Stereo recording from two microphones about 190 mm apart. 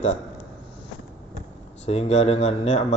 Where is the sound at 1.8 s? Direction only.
35° left (ahead or behind).